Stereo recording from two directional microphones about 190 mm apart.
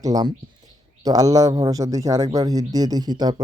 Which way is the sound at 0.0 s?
20° right (ahead or behind).